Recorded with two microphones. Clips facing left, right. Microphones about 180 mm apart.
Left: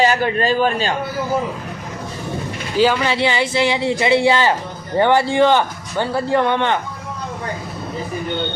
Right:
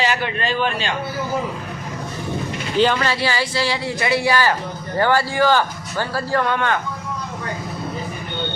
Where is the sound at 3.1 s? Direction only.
20° left (ahead or behind).